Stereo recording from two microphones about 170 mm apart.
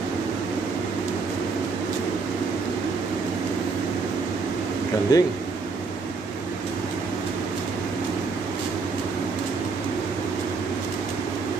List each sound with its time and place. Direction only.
5.1 s speech: 25° left (ahead or behind)